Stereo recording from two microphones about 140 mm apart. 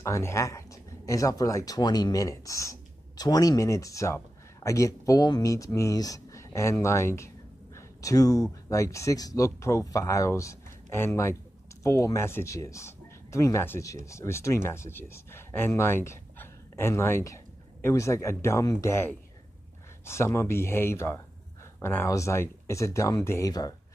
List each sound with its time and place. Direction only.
0.0 s speech: 20° left (ahead or behind)